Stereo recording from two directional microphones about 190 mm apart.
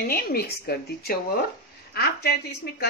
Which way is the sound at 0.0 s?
55° left (ahead or behind).